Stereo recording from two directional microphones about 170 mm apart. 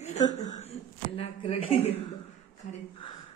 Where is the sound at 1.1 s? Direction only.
35° left (ahead or behind).